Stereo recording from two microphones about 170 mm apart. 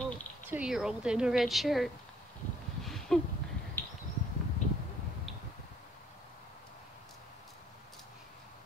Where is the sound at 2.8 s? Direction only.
Centre (ahead or behind).